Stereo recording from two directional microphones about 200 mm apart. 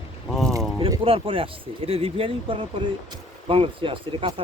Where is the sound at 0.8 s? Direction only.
25° right (ahead or behind).